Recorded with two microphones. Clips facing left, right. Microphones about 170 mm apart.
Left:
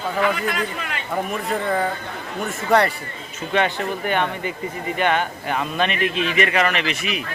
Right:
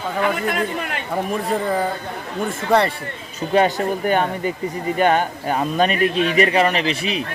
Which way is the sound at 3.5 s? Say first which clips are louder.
Right 4 dB; 40° right (ahead or behind).